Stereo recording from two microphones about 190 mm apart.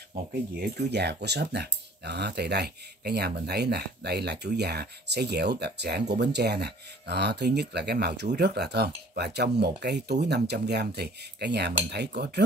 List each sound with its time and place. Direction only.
0.3 s speech: 55° right (ahead or behind)